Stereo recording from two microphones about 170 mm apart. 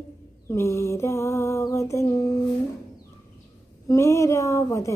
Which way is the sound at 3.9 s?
15° left (ahead or behind).